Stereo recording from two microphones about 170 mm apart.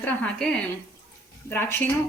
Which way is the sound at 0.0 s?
5° left (ahead or behind).